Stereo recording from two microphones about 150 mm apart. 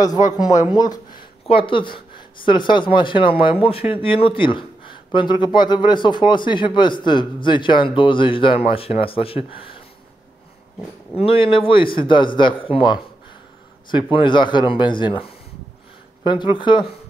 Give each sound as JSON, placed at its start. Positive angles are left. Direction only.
{"t": 0.0, "sound": "speech", "side_deg": 25}
{"t": 1.4, "sound": "speech", "side_deg": 35}
{"t": 11.1, "sound": "speech", "side_deg": 35}
{"t": 14.1, "sound": "speech", "side_deg": 30}
{"t": 16.5, "sound": "speech", "side_deg": 30}